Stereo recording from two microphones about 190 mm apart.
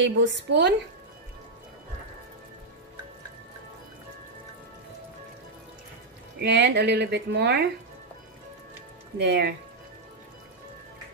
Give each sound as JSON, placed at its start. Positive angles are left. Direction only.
{"t": 0.0, "sound": "a woman's voice", "side_deg": -70}
{"t": 6.4, "sound": "speech", "side_deg": -65}
{"t": 9.2, "sound": "speech", "side_deg": -60}